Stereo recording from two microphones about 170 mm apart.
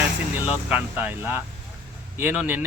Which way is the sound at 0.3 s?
10° right (ahead or behind).